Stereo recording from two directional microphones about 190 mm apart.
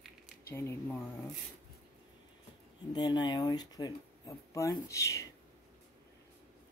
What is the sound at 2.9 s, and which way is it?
Speech, 20° left (ahead or behind).